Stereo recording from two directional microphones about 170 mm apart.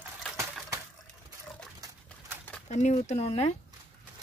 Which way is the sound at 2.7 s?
45° left (ahead or behind).